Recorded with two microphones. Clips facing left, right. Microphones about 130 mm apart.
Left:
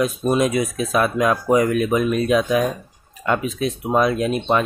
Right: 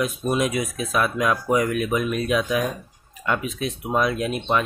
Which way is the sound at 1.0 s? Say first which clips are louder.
Left 3 dB; 40° left (ahead or behind).